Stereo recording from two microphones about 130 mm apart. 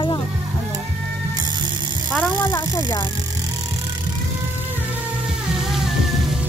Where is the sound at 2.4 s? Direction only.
35° left (ahead or behind).